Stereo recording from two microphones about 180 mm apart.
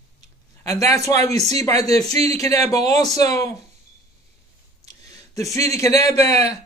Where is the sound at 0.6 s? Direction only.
15° left (ahead or behind).